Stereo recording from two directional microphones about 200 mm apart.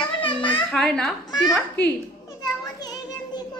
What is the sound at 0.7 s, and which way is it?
Speech, 5° left (ahead or behind).